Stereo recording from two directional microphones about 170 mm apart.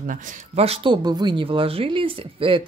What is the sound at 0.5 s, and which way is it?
Speech, 35° right (ahead or behind).